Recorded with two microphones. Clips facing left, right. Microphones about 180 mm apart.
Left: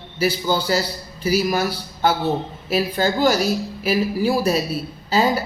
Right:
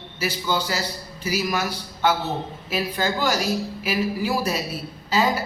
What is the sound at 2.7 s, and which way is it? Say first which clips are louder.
Speech: left 5 dB; 35° left (ahead or behind).